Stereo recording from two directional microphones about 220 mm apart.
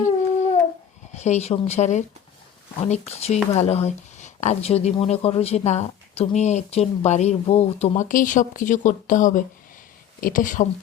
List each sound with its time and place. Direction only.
1.1 s speech: 30° left (ahead or behind)